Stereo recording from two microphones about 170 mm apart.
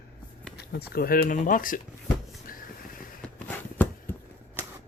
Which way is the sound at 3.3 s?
10° left (ahead or behind).